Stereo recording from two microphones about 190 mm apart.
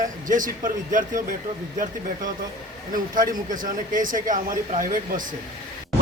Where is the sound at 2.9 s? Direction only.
45° right (ahead or behind).